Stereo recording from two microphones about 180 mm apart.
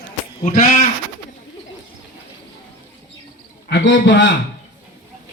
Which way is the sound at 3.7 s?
85° left.